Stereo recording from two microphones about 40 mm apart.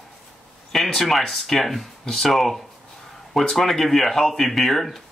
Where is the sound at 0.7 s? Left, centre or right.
Centre.